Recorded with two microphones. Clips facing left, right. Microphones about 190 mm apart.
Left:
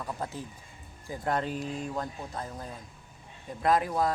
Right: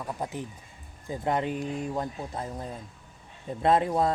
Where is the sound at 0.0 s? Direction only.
15° right (ahead or behind).